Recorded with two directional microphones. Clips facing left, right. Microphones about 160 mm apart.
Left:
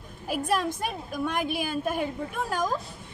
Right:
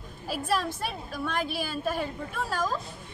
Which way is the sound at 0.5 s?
15° left (ahead or behind).